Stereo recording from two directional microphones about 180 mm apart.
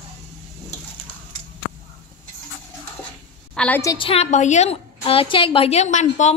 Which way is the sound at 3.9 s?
30° left (ahead or behind).